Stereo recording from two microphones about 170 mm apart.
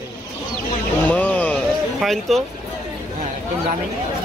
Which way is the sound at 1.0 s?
10° left (ahead or behind).